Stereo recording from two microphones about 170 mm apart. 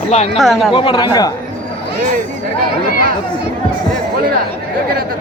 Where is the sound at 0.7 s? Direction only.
25° left (ahead or behind).